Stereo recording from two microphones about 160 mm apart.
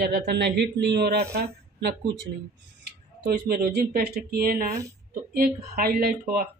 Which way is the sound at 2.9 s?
80° right.